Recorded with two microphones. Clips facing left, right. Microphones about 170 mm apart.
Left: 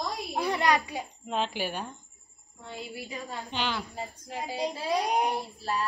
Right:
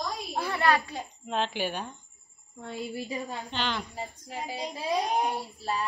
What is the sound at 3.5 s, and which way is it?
Speech, 10° left (ahead or behind).